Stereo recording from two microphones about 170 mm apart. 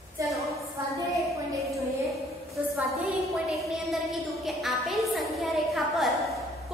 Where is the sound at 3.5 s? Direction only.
Centre (ahead or behind).